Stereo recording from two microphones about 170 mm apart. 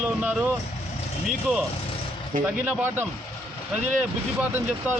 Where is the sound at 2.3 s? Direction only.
55° right (ahead or behind).